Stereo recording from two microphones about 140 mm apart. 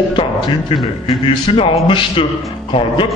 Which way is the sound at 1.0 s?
40° left (ahead or behind).